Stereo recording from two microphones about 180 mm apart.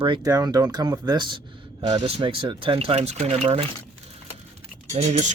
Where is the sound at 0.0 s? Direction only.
25° right (ahead or behind).